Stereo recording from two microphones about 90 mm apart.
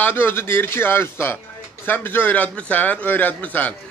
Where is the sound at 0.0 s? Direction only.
25° left (ahead or behind).